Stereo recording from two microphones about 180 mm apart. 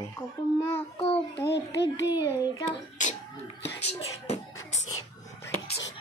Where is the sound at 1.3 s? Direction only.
70° left (ahead or behind); by 2.1 s 85° left.